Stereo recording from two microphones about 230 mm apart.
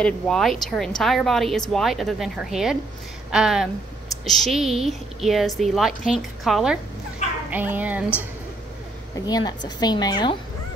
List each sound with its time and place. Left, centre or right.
0.0 s speech: centre
9.1 s a woman's voice: centre